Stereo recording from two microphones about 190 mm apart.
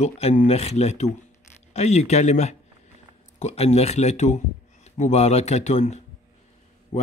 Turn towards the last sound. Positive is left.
turn(degrees=35)  # may be behind; listen again after turning